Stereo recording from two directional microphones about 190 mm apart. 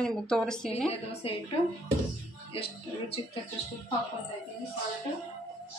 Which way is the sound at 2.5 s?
30° left (ahead or behind).